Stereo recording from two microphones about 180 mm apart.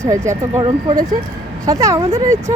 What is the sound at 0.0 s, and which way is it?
Speech, 15° right (ahead or behind).